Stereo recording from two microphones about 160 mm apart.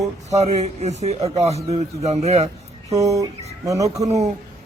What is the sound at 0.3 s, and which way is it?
A man's voice, 45° right (ahead or behind).